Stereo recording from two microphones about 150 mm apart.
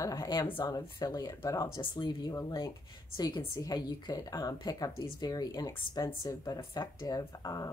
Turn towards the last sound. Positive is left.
turn(degrees=25)  # may be behind; listen again after turning